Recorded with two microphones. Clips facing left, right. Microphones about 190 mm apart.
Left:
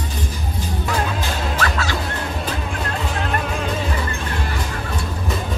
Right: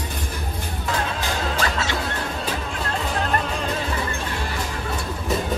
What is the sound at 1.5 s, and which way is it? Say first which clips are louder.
Music: left 2 dB; 25° right (ahead or behind).